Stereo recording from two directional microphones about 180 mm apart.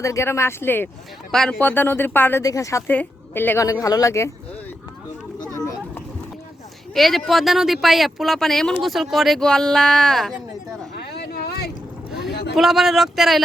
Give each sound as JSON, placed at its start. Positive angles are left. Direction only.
{"t": 0.0, "sound": "speech", "side_deg": 15}
{"t": 5.5, "sound": "a sound", "side_deg": 15}
{"t": 6.9, "sound": "speech", "side_deg": 0}
{"t": 10.9, "sound": "boat", "side_deg": 65}
{"t": 12.3, "sound": "a sound", "side_deg": 65}
{"t": 12.5, "sound": "speech", "side_deg": 0}